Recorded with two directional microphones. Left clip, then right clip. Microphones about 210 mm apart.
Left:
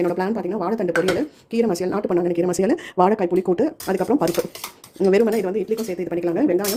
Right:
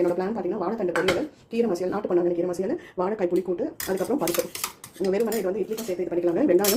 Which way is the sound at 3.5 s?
40° left (ahead or behind).